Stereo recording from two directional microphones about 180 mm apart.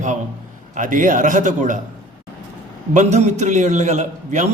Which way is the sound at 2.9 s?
40° right (ahead or behind).